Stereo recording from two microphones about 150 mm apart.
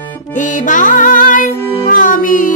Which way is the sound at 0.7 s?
60° left (ahead or behind).